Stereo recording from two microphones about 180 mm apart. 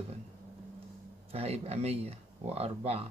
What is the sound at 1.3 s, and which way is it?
Speech, 35° right (ahead or behind).